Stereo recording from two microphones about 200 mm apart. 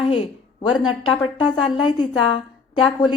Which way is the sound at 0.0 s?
25° left (ahead or behind).